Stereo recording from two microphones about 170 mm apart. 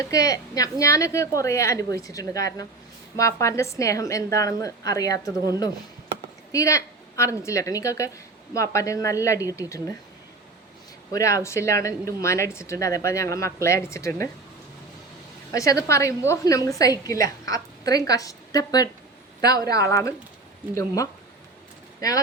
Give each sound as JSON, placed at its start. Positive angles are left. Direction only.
{"t": 0.0, "sound": "a woman's voice", "side_deg": 20}
{"t": 11.1, "sound": "a woman's voice", "side_deg": 20}
{"t": 15.5, "sound": "a woman's voice", "side_deg": 20}